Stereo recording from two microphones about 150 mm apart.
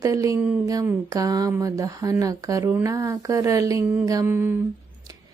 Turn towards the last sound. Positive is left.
turn(degrees=-15)  # may be behind; listen again after turning